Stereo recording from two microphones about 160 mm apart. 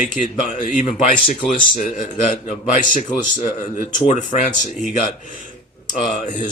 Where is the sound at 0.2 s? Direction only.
55° left (ahead or behind).